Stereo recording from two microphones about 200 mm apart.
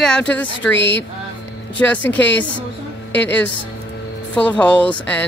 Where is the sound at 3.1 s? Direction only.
60° left (ahead or behind).